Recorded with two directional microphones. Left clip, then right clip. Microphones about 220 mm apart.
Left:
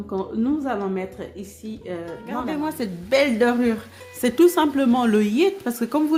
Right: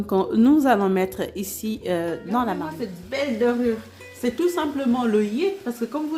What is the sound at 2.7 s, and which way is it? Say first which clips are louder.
A woman's voice: left 7 dB; 45° left (ahead or behind).